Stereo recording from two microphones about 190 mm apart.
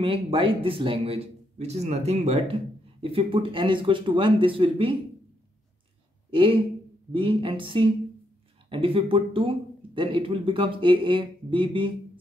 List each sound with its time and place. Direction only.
0.0 s a man's voice: 30° right (ahead or behind)
6.3 s speech: 25° right (ahead or behind)